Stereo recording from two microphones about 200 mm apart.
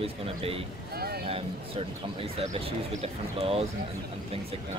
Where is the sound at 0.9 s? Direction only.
50° right (ahead or behind).